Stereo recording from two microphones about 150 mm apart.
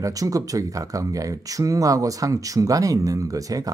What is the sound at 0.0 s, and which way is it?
Speech, 25° right (ahead or behind).